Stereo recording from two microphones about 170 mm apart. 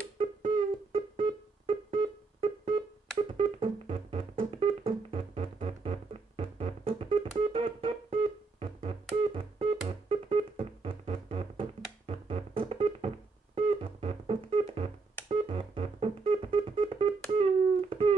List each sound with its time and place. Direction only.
0.2 s music: 35° right (ahead or behind)